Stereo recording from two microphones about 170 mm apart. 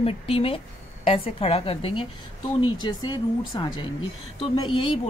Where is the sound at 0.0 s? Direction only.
35° left (ahead or behind).